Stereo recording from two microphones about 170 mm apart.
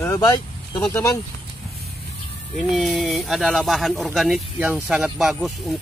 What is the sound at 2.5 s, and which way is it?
Speech, centre (ahead or behind).